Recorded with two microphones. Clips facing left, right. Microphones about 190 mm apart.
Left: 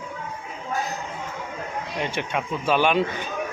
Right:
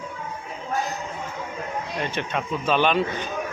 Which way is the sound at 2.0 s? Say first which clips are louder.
Left 2 dB; 10° left (ahead or behind).